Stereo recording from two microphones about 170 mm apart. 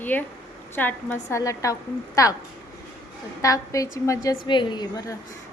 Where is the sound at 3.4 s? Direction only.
20° left (ahead or behind).